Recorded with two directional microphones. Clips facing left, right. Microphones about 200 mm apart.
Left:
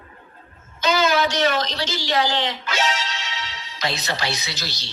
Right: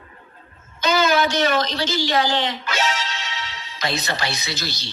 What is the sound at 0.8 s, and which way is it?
A woman's voice, 55° right (ahead or behind).